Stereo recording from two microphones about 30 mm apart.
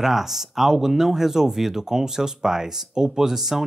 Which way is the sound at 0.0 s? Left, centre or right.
Centre.